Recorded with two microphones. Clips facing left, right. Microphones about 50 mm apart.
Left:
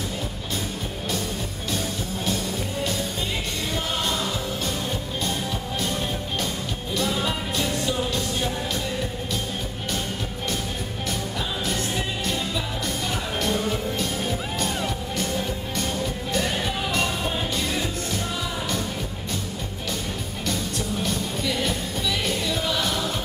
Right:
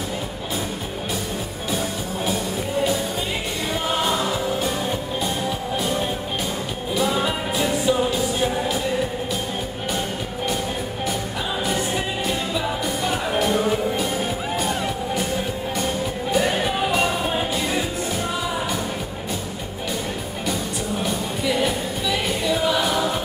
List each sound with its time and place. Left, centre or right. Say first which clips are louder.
2.2 s music: right 3 dB; centre
5.8 s music: right 3 dB; centre
12.3 s music: right 4 dB; centre
21.0 s music: right 3 dB; centre